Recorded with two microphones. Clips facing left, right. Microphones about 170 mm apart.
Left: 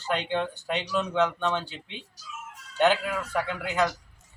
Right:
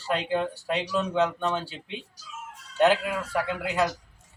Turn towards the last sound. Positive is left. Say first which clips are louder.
# right 1 dB
turn(degrees=0)  # may be behind; listen again after turning